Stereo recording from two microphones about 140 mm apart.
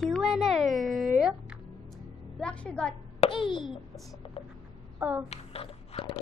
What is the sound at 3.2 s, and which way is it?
Plop, 35° left (ahead or behind).